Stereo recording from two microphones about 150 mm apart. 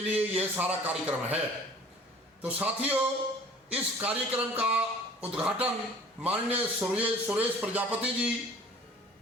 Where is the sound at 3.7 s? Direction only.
10° right (ahead or behind).